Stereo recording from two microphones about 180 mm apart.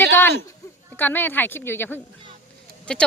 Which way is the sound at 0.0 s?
15° left (ahead or behind).